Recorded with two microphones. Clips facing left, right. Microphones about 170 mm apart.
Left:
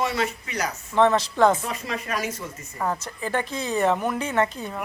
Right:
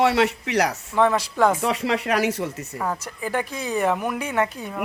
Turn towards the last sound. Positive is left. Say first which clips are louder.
# even
turn(degrees=-10)  # may be behind; listen again after turning